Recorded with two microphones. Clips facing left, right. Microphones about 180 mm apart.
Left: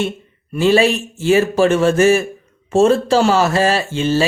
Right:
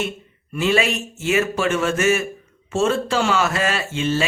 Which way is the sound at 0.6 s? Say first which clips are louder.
Left 6 dB; 35° left (ahead or behind).